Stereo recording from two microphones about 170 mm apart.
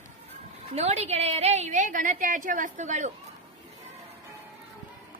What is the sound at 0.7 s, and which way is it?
A woman's voice, 40° right (ahead or behind).